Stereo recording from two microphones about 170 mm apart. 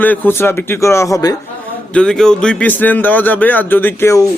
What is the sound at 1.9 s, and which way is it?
Speech, 5° left (ahead or behind).